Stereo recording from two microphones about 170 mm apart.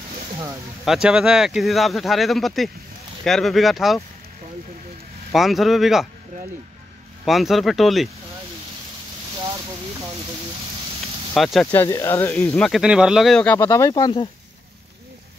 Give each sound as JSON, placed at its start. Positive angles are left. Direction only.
{"t": 0.8, "sound": "speech", "side_deg": -5}
{"t": 5.3, "sound": "speech", "side_deg": 0}
{"t": 7.2, "sound": "speech", "side_deg": 0}
{"t": 11.3, "sound": "speech", "side_deg": 0}
{"t": 11.7, "sound": "speech", "side_deg": 15}
{"t": 13.6, "sound": "speech", "side_deg": 15}